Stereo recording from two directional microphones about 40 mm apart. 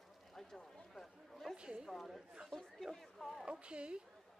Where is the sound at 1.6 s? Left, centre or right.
Right.